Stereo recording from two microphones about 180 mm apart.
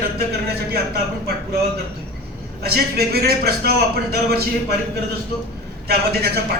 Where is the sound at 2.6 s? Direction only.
60° right (ahead or behind).